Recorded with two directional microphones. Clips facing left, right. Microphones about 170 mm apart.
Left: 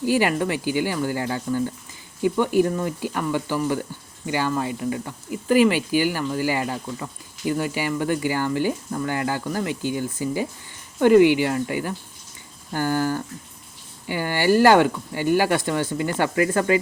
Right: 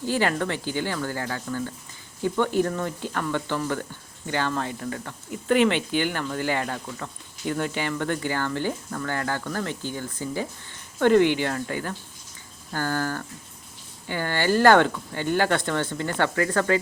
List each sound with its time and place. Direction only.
0.0 s speech: 10° left (ahead or behind)